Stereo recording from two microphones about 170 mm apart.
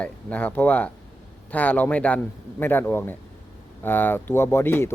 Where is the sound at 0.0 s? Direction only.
10° left (ahead or behind).